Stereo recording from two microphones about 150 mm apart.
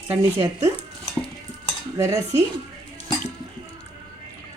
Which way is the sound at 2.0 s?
20° right (ahead or behind).